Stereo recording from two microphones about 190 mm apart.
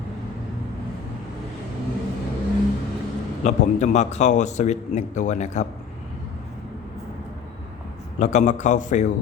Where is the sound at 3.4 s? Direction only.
40° left (ahead or behind).